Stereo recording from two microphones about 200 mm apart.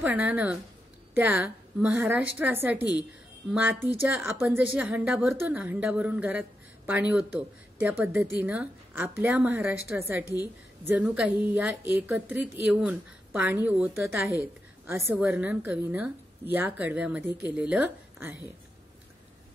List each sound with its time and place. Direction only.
0.0 s a woman's voice: 10° right (ahead or behind)
2.8 s a woman's voice: 20° left (ahead or behind)
3.5 s a woman's voice: 10° right (ahead or behind)
10.2 s a woman's voice: 15° left (ahead or behind)
10.9 s a woman's voice: 5° right (ahead or behind)
14.4 s a woman's voice: 10° right (ahead or behind)